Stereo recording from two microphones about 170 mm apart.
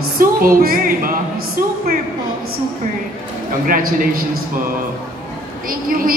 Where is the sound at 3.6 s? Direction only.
55° right (ahead or behind).